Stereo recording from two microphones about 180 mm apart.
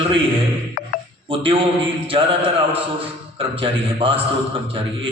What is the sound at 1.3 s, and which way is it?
Speech, 30° right (ahead or behind).